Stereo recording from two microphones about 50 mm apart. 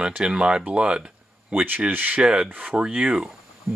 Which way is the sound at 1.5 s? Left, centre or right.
Right.